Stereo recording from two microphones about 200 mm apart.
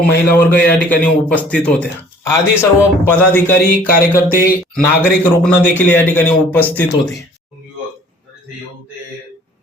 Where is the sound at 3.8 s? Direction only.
50° left (ahead or behind).